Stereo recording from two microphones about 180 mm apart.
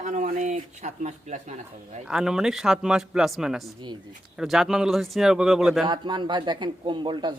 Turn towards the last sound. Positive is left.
turn(degrees=-25)  # may be behind; listen again after turning